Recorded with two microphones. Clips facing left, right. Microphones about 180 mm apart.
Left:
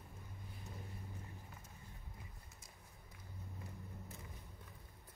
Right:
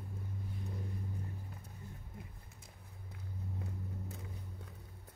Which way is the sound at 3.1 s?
70° right (ahead or behind).